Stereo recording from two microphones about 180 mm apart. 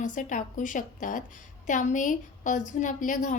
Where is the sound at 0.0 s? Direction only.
45° left (ahead or behind).